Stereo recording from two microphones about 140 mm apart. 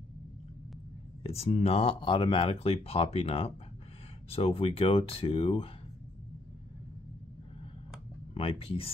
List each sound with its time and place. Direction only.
1.2 s speech: 45° left (ahead or behind)
8.4 s speech: 45° left (ahead or behind)